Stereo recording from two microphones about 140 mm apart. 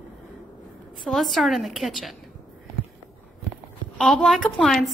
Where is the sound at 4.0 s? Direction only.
Centre (ahead or behind).